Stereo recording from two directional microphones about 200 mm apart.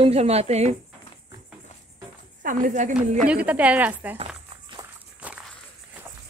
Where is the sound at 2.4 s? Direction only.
40° right (ahead or behind).